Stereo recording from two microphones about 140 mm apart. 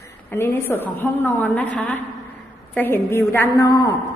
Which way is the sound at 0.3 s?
15° left (ahead or behind).